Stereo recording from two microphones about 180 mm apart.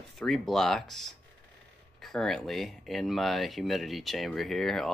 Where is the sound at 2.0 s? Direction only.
Centre (ahead or behind).